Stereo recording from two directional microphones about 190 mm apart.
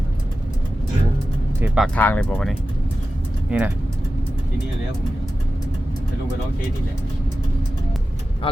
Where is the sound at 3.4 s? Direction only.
10° right (ahead or behind).